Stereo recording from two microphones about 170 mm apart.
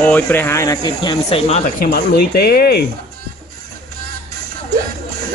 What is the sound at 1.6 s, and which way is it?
Speech, 60° left (ahead or behind).